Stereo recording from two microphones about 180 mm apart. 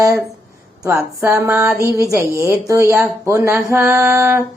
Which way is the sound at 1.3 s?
15° right (ahead or behind).